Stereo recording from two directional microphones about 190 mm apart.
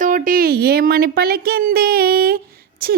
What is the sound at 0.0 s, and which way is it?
Speech, 45° right (ahead or behind).